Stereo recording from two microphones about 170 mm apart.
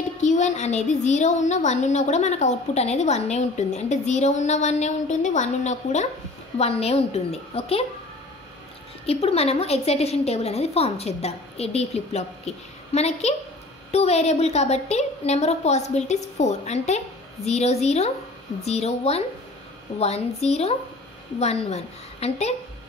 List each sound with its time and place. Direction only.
0.2 s a woman's voice: 45° left (ahead or behind)
9.0 s a woman's voice: 35° left (ahead or behind)